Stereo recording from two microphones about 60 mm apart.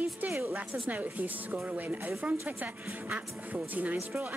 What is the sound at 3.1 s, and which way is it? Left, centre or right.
Speech, right.